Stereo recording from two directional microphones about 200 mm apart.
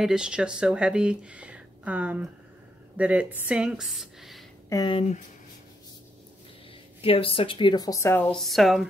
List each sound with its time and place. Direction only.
0.0 s speech: 5° right (ahead or behind)
4.6 s speech: 20° left (ahead or behind)
7.0 s speech: 30° left (ahead or behind); by 8.8 s centre (ahead or behind)